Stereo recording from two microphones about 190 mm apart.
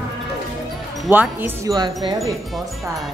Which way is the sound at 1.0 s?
5° right (ahead or behind).